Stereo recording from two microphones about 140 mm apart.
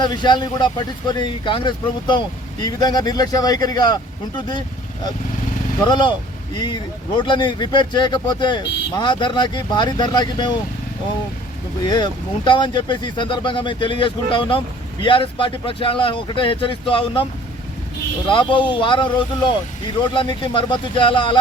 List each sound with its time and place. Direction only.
0.0 s speech: 30° left (ahead or behind)
5.8 s speech: 35° left (ahead or behind)
7.2 s speech: 35° left (ahead or behind)
11.9 s speech: 30° left (ahead or behind)
18.3 s speech: 35° left (ahead or behind)